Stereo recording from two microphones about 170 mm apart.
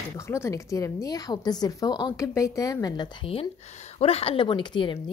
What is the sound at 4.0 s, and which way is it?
A woman's voice, 35° left (ahead or behind).